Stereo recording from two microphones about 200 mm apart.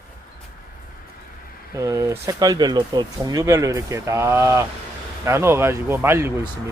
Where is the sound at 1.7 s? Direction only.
15° right (ahead or behind).